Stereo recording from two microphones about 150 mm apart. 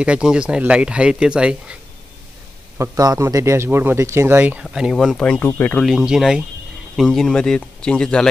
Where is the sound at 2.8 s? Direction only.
20° right (ahead or behind); by 5.9 s 10° left (ahead or behind).